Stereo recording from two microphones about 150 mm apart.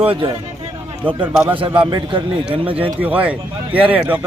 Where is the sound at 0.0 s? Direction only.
35° right (ahead or behind).